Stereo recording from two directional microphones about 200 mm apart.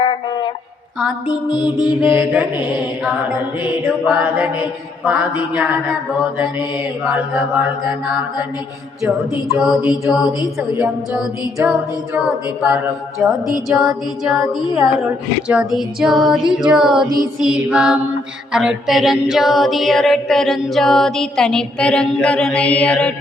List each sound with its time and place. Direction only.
0.0 s a sound: 25° left (ahead or behind)
1.3 s music: 20° left (ahead or behind)
2.0 s mantra: 10° right (ahead or behind)
3.6 s mantra: 5° right (ahead or behind)
7.0 s a capella: 5° right (ahead or behind)
15.4 s a capella: 5° right (ahead or behind)